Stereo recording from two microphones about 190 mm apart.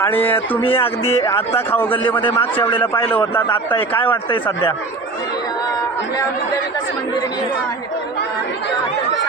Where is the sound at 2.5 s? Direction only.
25° left (ahead or behind).